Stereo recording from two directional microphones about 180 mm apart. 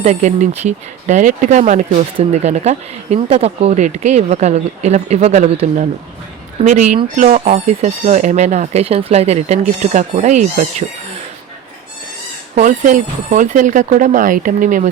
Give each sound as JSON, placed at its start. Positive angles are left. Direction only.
{"t": 0.0, "sound": "speech", "side_deg": -40}
{"t": 12.5, "sound": "speech", "side_deg": -45}